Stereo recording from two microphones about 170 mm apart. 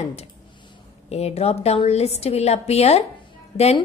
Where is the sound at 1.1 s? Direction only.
40° left (ahead or behind).